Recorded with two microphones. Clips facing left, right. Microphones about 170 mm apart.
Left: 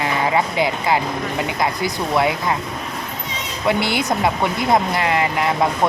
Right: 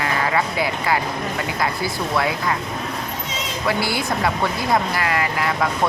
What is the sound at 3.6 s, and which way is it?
Speech, 20° left (ahead or behind).